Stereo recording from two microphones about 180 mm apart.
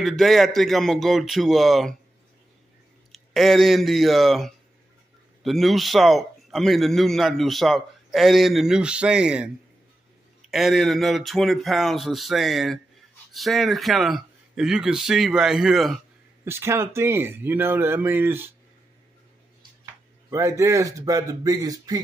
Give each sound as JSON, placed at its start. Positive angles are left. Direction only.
{"t": 0.0, "sound": "a man's voice", "side_deg": 0}
{"t": 3.1, "sound": "a man's voice", "side_deg": 0}
{"t": 10.5, "sound": "a man's voice", "side_deg": 0}
{"t": 16.4, "sound": "speech", "side_deg": -15}
{"t": 20.2, "sound": "speech", "side_deg": -15}